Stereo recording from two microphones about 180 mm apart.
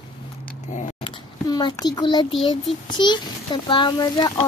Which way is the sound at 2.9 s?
25° left (ahead or behind).